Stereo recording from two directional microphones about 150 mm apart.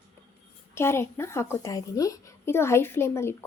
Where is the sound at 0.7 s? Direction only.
15° left (ahead or behind).